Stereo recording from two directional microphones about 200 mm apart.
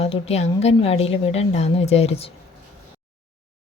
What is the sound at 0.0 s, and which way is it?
A woman's voice, 30° left (ahead or behind).